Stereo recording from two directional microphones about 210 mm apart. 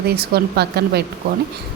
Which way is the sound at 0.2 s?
50° right (ahead or behind).